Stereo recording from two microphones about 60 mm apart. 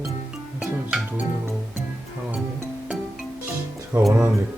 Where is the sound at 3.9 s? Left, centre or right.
Right.